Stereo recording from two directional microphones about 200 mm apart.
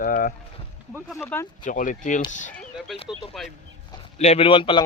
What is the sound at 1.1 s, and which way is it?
Speech, 10° left (ahead or behind).